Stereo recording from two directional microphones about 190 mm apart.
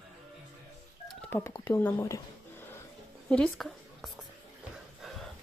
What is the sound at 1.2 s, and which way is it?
Speech, 10° left (ahead or behind).